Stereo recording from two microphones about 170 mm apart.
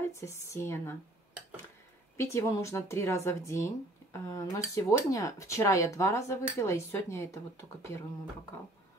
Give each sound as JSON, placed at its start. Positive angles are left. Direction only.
{"t": 0.1, "sound": "speech", "side_deg": 15}
{"t": 2.1, "sound": "speech", "side_deg": 15}